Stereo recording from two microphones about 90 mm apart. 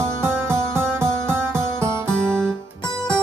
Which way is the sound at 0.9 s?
30° right (ahead or behind).